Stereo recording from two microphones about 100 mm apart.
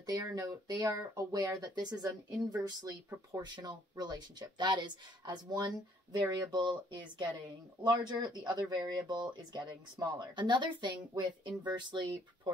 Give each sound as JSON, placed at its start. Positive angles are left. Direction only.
{"t": 0.0, "sound": "speech", "side_deg": -45}
{"t": 3.5, "sound": "speech", "side_deg": -45}